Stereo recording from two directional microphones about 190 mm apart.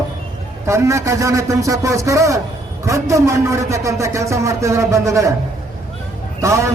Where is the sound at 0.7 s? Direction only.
15° right (ahead or behind).